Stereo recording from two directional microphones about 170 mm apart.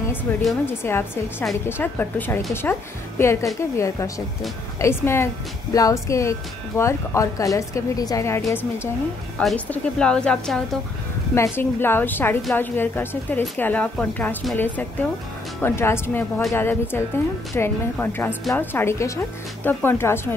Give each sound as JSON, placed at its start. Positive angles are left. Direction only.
{"t": 0.3, "sound": "a woman's voice", "side_deg": 10}
{"t": 9.4, "sound": "a woman's voice", "side_deg": 5}
{"t": 11.3, "sound": "a woman's voice", "side_deg": 15}